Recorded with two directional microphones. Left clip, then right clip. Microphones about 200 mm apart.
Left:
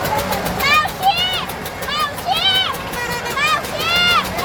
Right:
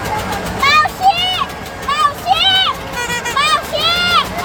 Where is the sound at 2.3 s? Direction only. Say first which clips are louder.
Right 2 dB; 30° right (ahead or behind).